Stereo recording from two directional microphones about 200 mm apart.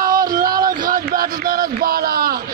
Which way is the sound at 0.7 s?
45° right (ahead or behind).